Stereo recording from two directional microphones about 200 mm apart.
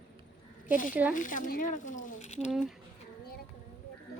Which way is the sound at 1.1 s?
40° left (ahead or behind).